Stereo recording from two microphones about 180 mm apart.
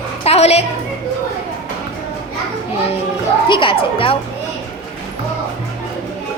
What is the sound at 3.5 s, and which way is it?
Speech, 30° left (ahead or behind).